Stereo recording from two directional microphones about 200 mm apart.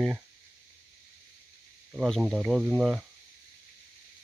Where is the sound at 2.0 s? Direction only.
Centre (ahead or behind).